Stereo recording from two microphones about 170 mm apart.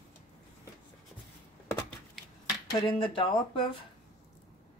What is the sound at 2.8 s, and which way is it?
Speech, 30° left (ahead or behind).